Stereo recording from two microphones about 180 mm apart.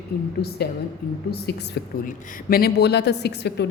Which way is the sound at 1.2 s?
65° left (ahead or behind).